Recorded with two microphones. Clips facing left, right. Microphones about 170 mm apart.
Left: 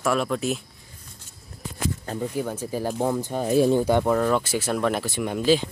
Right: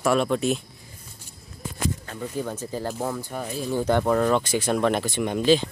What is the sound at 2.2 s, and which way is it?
Speech, 10° left (ahead or behind).